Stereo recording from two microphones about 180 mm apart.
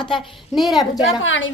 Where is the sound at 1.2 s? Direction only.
90° left.